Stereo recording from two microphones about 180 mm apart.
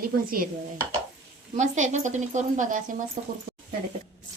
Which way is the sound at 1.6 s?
40° right (ahead or behind).